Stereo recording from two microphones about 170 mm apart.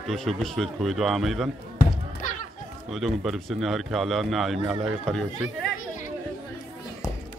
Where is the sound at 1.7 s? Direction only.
50° left (ahead or behind).